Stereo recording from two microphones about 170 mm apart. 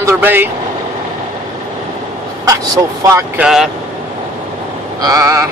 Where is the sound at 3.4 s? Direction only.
Centre (ahead or behind).